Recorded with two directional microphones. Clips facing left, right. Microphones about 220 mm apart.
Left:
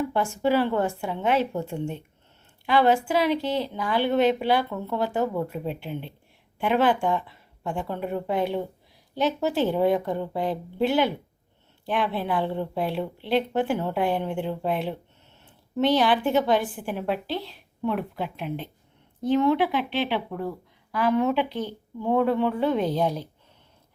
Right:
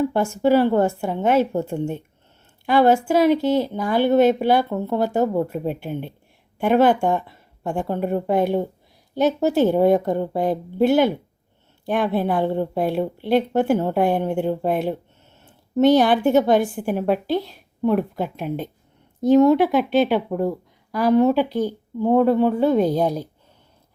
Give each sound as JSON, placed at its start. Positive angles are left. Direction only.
{"t": 0.1, "sound": "a woman's voice", "side_deg": -45}